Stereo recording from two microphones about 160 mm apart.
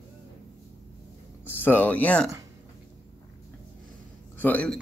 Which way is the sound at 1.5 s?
10° left (ahead or behind).